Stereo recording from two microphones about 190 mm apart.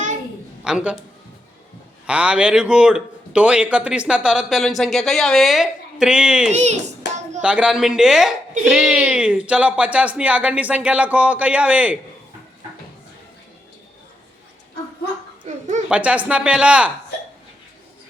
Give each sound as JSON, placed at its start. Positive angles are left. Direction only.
{"t": 0.6, "sound": "a man's voice", "side_deg": -5}
{"t": 2.0, "sound": "a man's voice", "side_deg": -5}
{"t": 15.4, "sound": "a sound", "side_deg": -40}
{"t": 15.9, "sound": "speech", "side_deg": -5}